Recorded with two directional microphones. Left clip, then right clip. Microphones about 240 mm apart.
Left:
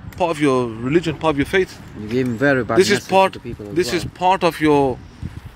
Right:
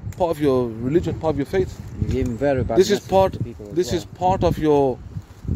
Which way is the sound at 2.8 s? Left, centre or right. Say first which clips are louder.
Left 1 dB; centre.